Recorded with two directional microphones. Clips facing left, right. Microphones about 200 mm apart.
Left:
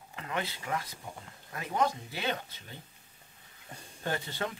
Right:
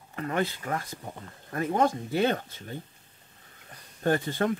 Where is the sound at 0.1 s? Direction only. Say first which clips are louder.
Right 7 dB; 50° right (ahead or behind).